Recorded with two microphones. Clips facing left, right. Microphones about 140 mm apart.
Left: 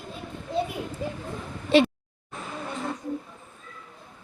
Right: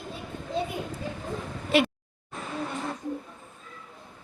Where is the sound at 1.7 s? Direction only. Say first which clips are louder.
Left 4 dB; 30° left (ahead or behind).